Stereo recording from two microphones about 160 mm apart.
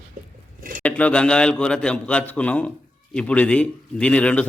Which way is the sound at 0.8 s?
10° left (ahead or behind).